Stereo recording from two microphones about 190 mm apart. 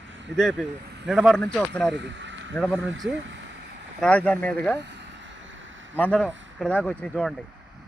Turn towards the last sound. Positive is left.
turn(degrees=5)  # may be behind; listen again after turning